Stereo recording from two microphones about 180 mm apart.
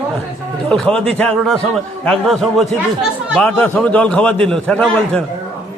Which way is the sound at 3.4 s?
10° left (ahead or behind).